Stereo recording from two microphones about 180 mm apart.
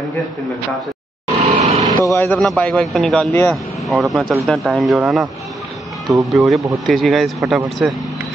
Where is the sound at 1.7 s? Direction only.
20° right (ahead or behind).